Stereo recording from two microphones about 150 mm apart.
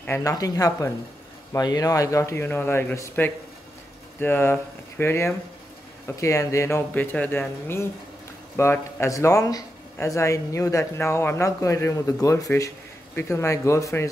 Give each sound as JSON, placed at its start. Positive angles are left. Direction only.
{"t": 0.0, "sound": "speech", "side_deg": 20}